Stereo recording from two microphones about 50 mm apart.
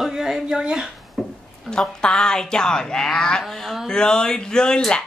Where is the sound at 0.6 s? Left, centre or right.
Centre.